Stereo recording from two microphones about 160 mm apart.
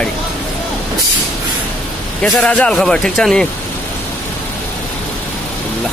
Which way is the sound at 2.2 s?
Centre (ahead or behind).